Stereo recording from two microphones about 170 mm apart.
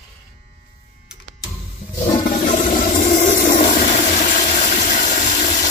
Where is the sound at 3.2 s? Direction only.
70° left (ahead or behind).